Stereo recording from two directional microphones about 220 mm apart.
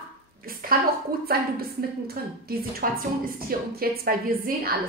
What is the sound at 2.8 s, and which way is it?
A woman's voice, 40° right (ahead or behind).